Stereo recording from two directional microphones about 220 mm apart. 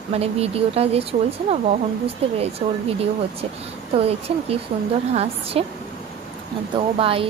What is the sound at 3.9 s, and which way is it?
A woman's voice, 25° right (ahead or behind).